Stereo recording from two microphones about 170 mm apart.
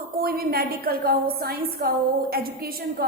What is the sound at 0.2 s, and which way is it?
A woman's voice, 60° right (ahead or behind).